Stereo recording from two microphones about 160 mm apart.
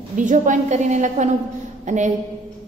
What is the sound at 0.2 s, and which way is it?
A woman's voice, 50° right (ahead or behind).